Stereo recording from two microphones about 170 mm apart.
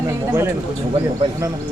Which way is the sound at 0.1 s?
15° right (ahead or behind).